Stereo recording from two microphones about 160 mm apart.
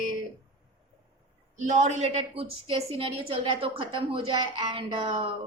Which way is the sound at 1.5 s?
45° right (ahead or behind).